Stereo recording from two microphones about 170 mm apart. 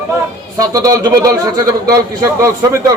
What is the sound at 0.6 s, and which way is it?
A man's voice, 20° right (ahead or behind).